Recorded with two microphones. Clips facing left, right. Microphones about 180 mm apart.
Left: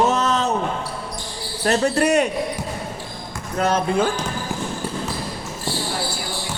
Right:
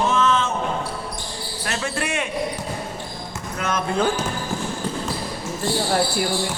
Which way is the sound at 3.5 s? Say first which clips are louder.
Left 6 dB; 35° left (ahead or behind).